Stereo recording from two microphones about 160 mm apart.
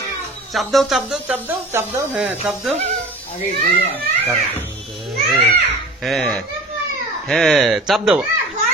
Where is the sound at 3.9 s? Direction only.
10° left (ahead or behind).